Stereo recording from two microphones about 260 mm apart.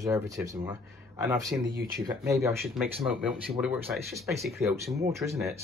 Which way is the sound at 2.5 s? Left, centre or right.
Centre.